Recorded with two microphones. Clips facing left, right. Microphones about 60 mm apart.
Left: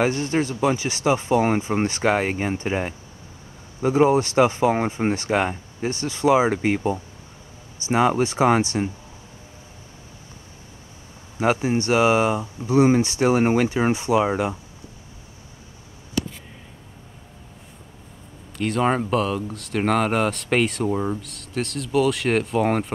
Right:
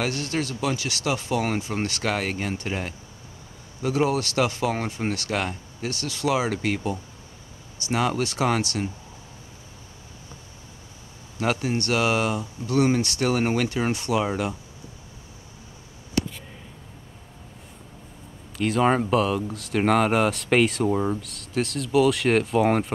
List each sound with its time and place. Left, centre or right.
0.0 s speech: left
11.3 s speech: centre
18.6 s speech: centre